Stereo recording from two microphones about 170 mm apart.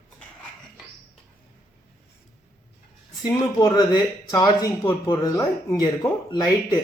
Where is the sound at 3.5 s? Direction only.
25° left (ahead or behind).